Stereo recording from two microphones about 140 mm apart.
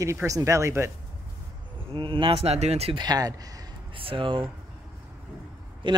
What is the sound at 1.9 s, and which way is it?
Speech, 35° right (ahead or behind).